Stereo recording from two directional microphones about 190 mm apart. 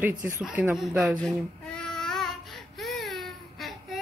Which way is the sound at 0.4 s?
5° right (ahead or behind).